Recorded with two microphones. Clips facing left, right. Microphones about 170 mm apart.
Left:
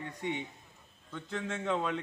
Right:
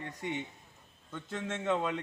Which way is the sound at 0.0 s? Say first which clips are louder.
Left 1 dB; centre (ahead or behind).